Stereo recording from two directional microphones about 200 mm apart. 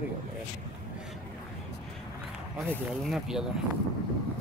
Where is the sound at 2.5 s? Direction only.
Centre (ahead or behind).